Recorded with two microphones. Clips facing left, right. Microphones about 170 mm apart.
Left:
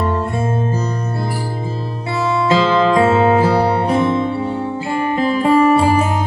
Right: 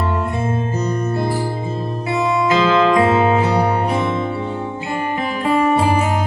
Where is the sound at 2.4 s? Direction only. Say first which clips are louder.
Left 1 dB; 30° left (ahead or behind).